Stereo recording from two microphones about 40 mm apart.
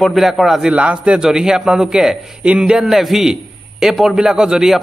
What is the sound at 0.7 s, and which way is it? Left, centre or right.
Speech, right.